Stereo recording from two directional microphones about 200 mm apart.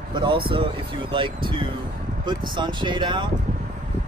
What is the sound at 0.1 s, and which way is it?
Speech, 25° right (ahead or behind).